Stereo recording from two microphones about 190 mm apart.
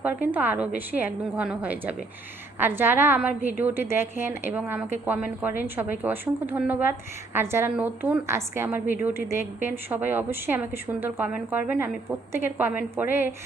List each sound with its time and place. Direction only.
0.0 s a woman's voice: 10° right (ahead or behind)